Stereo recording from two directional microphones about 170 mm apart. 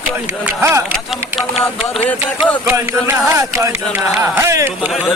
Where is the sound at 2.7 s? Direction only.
15° right (ahead or behind).